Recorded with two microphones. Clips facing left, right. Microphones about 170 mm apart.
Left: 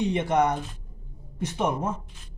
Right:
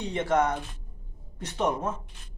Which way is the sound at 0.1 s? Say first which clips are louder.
Left 2 dB; 15° left (ahead or behind).